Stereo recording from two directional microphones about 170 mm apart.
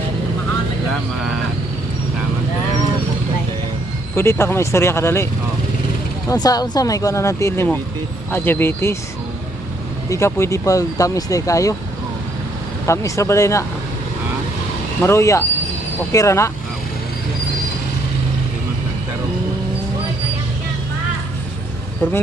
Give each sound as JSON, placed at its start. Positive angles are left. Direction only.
{"t": 4.1, "sound": "speech", "side_deg": 15}
{"t": 10.1, "sound": "speech", "side_deg": 15}
{"t": 12.8, "sound": "speech", "side_deg": 15}
{"t": 15.0, "sound": "speech", "side_deg": 15}
{"t": 22.0, "sound": "speech", "side_deg": 15}